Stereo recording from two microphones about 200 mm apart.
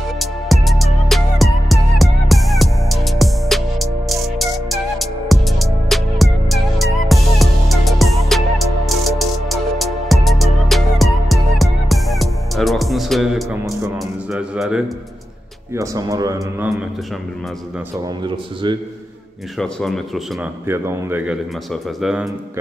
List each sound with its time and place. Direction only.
0.2 s music: centre (ahead or behind)
15.7 s speech: 15° right (ahead or behind)
18.2 s speech: 25° right (ahead or behind)
19.6 s speech: 5° left (ahead or behind)
20.6 s speech: 10° right (ahead or behind)